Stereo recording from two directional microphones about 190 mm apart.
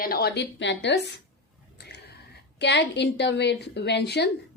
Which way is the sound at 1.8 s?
60° left (ahead or behind).